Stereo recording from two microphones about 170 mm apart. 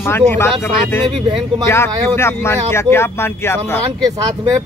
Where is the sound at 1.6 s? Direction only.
15° left (ahead or behind).